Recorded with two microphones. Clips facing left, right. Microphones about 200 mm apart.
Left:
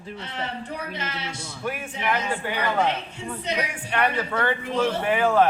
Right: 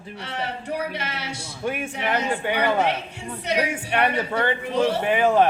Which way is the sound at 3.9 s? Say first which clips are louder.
Right 1 dB; 20° right (ahead or behind).